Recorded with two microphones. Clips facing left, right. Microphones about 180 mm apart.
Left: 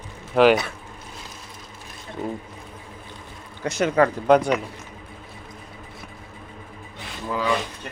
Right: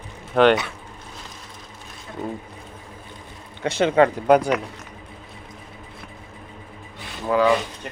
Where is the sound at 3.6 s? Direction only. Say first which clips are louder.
Right 2 dB; 30° right (ahead or behind).